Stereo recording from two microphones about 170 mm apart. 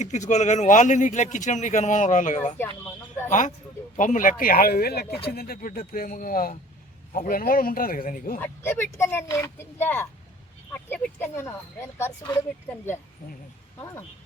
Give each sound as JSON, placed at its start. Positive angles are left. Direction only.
{"t": 0.0, "sound": "speech", "side_deg": 45}
{"t": 8.4, "sound": "speech", "side_deg": 10}